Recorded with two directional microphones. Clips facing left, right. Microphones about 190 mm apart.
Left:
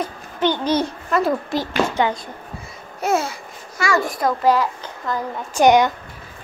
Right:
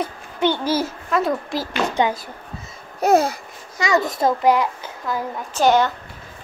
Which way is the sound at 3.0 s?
35° right (ahead or behind).